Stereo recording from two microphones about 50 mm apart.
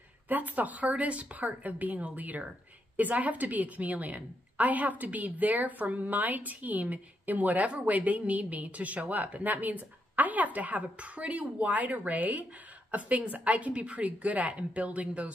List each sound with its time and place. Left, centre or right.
0.3 s a woman's voice: right